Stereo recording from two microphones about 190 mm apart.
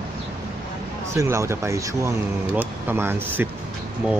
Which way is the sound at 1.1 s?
15° right (ahead or behind).